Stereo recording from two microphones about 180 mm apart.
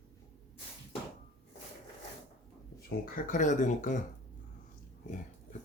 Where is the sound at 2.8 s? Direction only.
45° left (ahead or behind).